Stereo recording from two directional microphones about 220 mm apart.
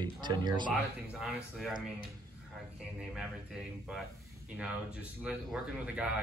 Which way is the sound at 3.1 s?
Centre (ahead or behind).